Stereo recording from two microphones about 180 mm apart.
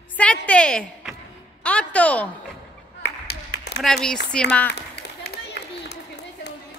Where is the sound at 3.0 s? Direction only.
70° left (ahead or behind).